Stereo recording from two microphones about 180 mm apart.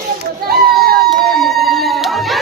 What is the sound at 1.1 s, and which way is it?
Music, centre (ahead or behind).